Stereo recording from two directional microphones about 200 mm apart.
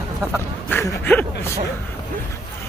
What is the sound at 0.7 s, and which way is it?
Speech, 10° left (ahead or behind).